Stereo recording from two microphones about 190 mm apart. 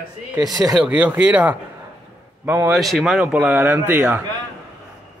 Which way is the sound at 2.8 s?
Centre (ahead or behind).